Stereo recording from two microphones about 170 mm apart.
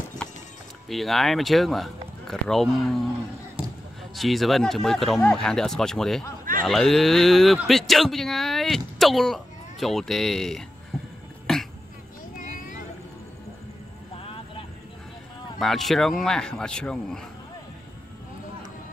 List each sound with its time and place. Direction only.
0.8 s speech: centre (ahead or behind)
3.6 s basketball bounce: 5° right (ahead or behind)
4.1 s speech: centre (ahead or behind)
10.9 s cough: centre (ahead or behind)
11.5 s a sound: centre (ahead or behind)
12.4 s vehicle: 50° left (ahead or behind)
14.2 s vehicle: 30° left (ahead or behind)
15.6 s speech: centre (ahead or behind)